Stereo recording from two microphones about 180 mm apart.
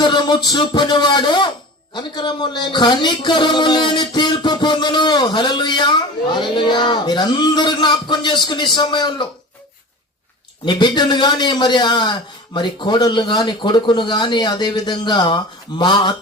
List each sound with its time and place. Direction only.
0.0 s speech: 25° left (ahead or behind)
10.7 s speech: 25° left (ahead or behind)